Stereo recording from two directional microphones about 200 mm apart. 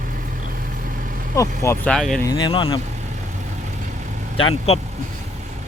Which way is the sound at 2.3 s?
20° left (ahead or behind).